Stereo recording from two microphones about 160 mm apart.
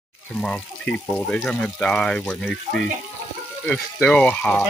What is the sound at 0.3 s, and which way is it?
Speech, 5° left (ahead or behind).